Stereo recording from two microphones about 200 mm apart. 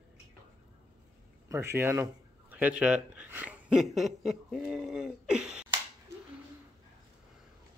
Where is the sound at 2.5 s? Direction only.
5° right (ahead or behind).